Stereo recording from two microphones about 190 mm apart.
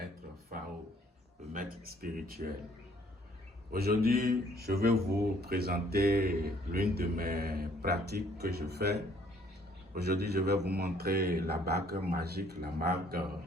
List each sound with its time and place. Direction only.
1.5 s speech: 50° right (ahead or behind)
3.7 s a man's voice: 55° right (ahead or behind)